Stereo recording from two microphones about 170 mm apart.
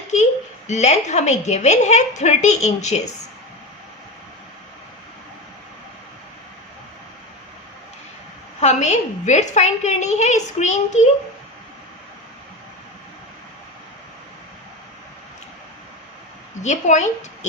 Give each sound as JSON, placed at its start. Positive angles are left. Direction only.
{"t": 0.7, "sound": "a woman's voice", "side_deg": 45}
{"t": 8.6, "sound": "a woman's voice", "side_deg": 45}
{"t": 16.6, "sound": "a woman's voice", "side_deg": 45}